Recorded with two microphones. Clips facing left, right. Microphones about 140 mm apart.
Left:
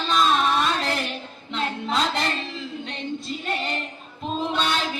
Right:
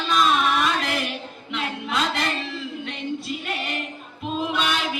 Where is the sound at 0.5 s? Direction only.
30° left (ahead or behind).